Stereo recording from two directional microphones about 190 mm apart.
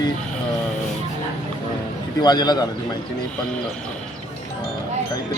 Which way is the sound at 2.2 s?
20° left (ahead or behind).